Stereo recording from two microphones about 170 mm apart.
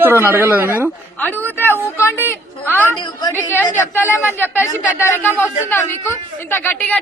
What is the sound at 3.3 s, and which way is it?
Speech, 10° left (ahead or behind).